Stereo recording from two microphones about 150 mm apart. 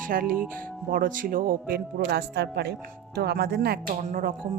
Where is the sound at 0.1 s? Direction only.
70° right (ahead or behind); by 3.8 s 90° right.